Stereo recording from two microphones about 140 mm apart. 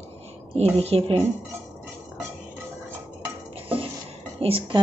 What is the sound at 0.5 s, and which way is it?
Speech, 45° right (ahead or behind).